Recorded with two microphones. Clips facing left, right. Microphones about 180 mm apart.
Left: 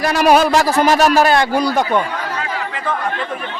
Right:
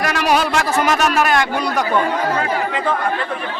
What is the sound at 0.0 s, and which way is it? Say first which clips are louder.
A man's voice: left 5 dB; 40° left (ahead or behind).